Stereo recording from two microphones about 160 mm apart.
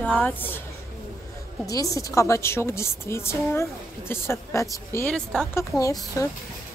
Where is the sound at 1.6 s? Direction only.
20° left (ahead or behind).